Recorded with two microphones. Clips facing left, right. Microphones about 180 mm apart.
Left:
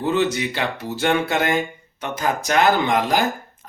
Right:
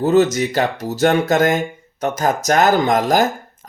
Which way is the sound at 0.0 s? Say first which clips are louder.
Right 6 dB; 40° right (ahead or behind).